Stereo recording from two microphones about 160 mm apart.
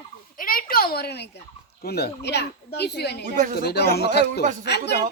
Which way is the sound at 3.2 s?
50° right (ahead or behind).